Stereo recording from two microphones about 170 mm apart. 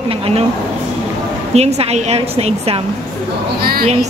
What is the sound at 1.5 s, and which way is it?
A man's voice, 40° right (ahead or behind).